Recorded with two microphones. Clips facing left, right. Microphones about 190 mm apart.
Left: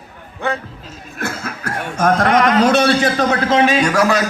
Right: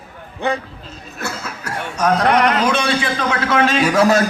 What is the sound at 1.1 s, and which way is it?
A man's voice, 55° left (ahead or behind).